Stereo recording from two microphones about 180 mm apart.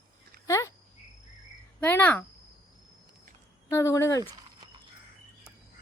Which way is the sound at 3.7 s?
15° left (ahead or behind).